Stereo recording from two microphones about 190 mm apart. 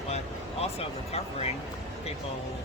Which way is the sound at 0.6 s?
35° left (ahead or behind).